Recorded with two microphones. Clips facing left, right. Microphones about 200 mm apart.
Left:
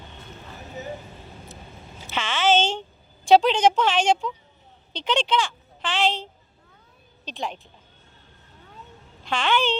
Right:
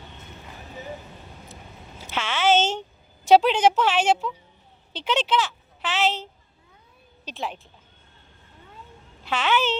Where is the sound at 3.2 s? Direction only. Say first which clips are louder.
Even; 10° right (ahead or behind).